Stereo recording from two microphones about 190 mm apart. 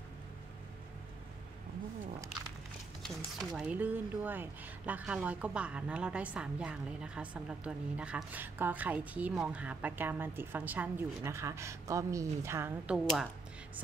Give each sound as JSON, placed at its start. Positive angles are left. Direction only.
{"t": 3.3, "sound": "speech", "side_deg": -5}